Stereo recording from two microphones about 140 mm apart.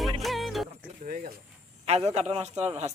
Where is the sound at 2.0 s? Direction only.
50° right (ahead or behind).